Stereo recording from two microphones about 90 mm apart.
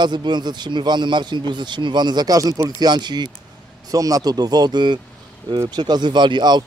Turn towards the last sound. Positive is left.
turn(degrees=-55)  # may be behind; listen again after turning